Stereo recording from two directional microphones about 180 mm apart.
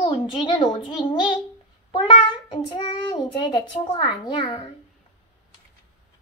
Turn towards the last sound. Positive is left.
turn(degrees=25)  # may be behind; listen again after turning